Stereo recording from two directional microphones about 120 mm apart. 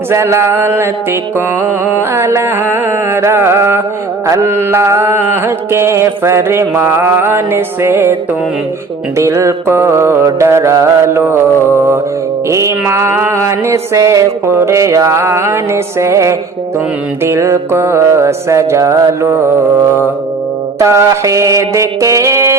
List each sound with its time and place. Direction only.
0.1 s music: 20° right (ahead or behind)
9.1 s music: 25° right (ahead or behind)
12.5 s music: 25° right (ahead or behind)